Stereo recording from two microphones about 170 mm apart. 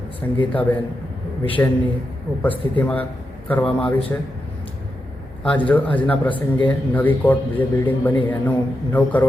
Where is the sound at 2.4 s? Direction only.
10° left (ahead or behind).